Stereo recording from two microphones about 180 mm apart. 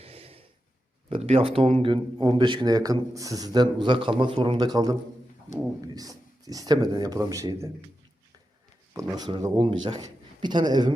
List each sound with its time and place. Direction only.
0.0 s a sound: 35° right (ahead or behind)
1.1 s speech: 35° right (ahead or behind)
9.1 s speech: 20° right (ahead or behind)